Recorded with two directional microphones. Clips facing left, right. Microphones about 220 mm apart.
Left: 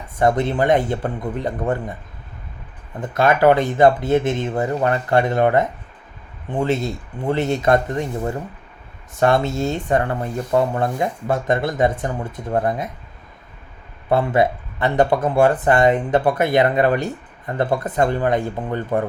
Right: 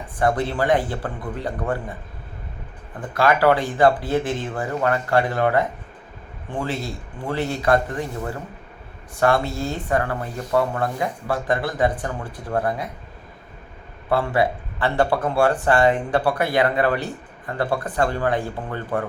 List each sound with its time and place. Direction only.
0.2 s speech: 20° left (ahead or behind)
3.4 s speech: 20° left (ahead or behind)
14.1 s speech: 20° left (ahead or behind)